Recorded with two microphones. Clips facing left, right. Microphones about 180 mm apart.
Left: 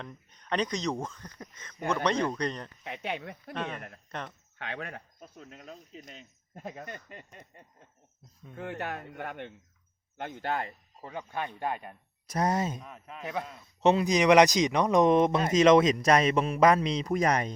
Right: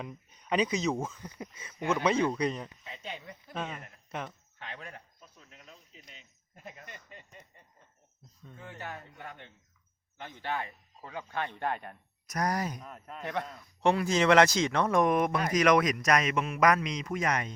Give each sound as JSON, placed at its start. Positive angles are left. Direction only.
{"t": 0.0, "sound": "speech", "side_deg": -10}
{"t": 2.8, "sound": "speech", "side_deg": 65}
{"t": 3.5, "sound": "speech", "side_deg": -5}
{"t": 4.5, "sound": "speech", "side_deg": 65}
{"t": 5.2, "sound": "speech", "side_deg": 45}
{"t": 8.5, "sound": "speech", "side_deg": 65}
{"t": 11.0, "sound": "speech", "side_deg": 15}
{"t": 12.3, "sound": "speech", "side_deg": 25}
{"t": 12.8, "sound": "speech", "side_deg": 0}
{"t": 13.6, "sound": "speech", "side_deg": 20}